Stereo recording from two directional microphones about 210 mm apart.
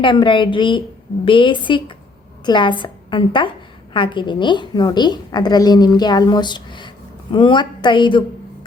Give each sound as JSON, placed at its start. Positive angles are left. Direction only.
{"t": 0.0, "sound": "a woman's voice", "side_deg": 25}